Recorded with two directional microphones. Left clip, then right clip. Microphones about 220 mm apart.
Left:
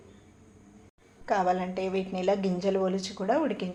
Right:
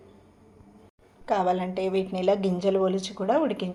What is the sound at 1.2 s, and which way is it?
A woman's voice, 25° right (ahead or behind).